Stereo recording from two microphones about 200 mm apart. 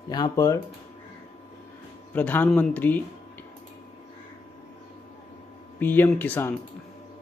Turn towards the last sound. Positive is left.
turn(degrees=10)  # may be behind; listen again after turning